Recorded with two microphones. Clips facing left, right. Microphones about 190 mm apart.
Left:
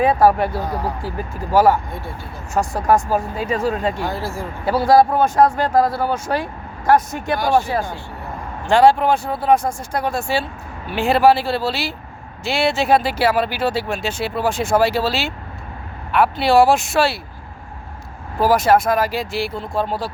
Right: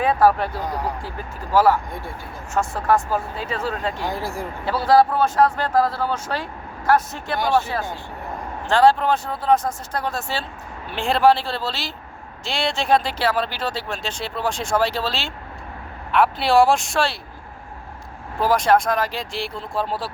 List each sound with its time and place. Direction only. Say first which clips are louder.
0.0 s speech: left 3 dB; 10° left (ahead or behind)
0.6 s speech: left 2 dB; 15° right (ahead or behind)
2.7 s speech: left 4 dB; 15° left (ahead or behind)
4.0 s speech: left 2 dB; 15° right (ahead or behind)
4.6 s speech: left 3 dB; 10° left (ahead or behind)
18.3 s speech: left 3 dB; 5° left (ahead or behind)